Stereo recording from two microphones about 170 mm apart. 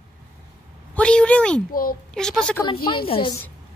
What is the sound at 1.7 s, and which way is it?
Speech, 55° left (ahead or behind).